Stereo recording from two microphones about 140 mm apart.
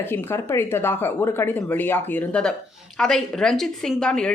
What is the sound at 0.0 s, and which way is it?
A woman's voice, 15° left (ahead or behind).